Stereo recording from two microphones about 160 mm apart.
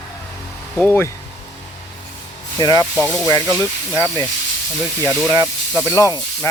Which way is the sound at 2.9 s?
Centre (ahead or behind).